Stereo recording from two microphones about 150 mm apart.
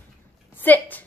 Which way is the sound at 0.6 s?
10° left (ahead or behind).